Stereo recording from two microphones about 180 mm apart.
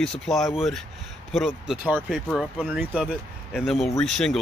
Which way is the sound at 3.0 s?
Centre (ahead or behind).